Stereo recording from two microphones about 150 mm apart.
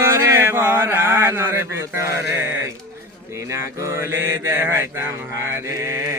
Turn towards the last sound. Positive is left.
turn(degrees=-20)  # may be behind; listen again after turning